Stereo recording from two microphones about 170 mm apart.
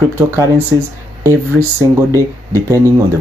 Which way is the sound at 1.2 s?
15° right (ahead or behind).